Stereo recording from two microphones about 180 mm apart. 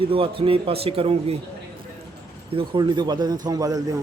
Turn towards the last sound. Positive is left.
turn(degrees=-20)  # may be behind; listen again after turning